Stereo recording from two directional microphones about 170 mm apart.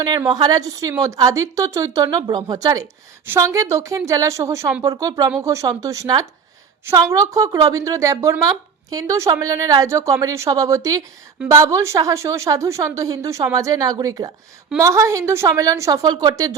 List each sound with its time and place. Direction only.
0.3 s a woman's voice: 25° right (ahead or behind)